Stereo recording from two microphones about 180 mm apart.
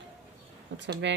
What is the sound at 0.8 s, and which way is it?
Speech, 80° right.